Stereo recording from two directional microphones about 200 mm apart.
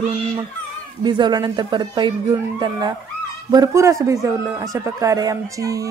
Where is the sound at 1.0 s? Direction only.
20° right (ahead or behind).